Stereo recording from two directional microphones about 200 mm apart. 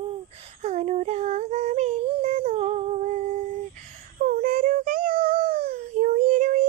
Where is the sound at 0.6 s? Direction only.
35° right (ahead or behind).